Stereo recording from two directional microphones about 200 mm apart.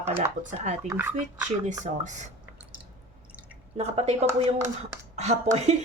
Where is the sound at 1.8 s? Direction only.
35° right (ahead or behind).